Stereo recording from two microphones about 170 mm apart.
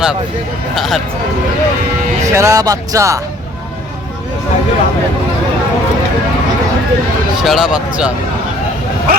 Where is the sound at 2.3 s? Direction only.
15° right (ahead or behind).